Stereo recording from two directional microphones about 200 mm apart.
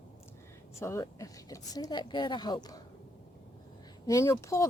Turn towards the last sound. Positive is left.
turn(degrees=15)  # may be behind; listen again after turning